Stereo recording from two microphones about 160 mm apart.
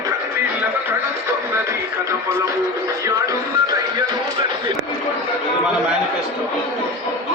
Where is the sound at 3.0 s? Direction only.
20° right (ahead or behind).